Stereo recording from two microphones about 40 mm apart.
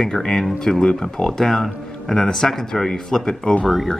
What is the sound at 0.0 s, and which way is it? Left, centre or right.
Speech, centre.